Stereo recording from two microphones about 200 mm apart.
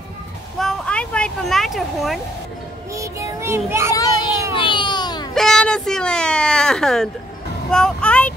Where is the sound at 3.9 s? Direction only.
20° left (ahead or behind).